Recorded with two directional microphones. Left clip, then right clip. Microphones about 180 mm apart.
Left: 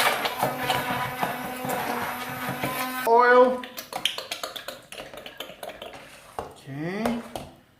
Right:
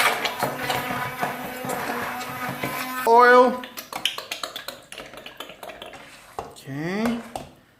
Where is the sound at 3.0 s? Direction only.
55° right (ahead or behind).